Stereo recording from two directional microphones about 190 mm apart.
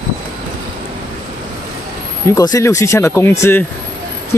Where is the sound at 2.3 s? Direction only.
20° left (ahead or behind).